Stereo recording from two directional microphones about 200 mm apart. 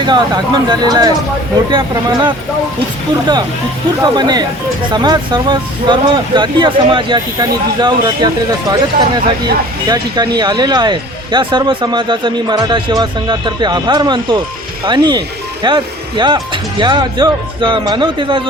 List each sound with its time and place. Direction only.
0.0 s speech: 20° right (ahead or behind)
4.0 s speech: 20° right (ahead or behind)